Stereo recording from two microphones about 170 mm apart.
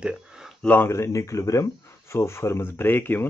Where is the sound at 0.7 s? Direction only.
15° left (ahead or behind).